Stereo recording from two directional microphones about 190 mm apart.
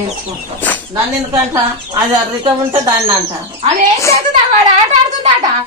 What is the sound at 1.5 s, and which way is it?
Speech, 25° right (ahead or behind).